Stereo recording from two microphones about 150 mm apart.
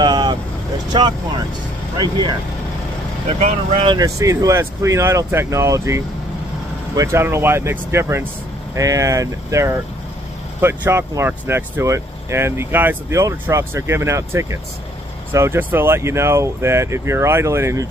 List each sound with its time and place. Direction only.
0.0 s vehicle: 30° right (ahead or behind)
0.9 s speech: 30° right (ahead or behind)
3.8 s speech: 25° right (ahead or behind)